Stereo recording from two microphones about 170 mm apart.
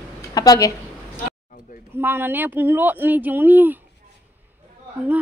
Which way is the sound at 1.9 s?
10° right (ahead or behind).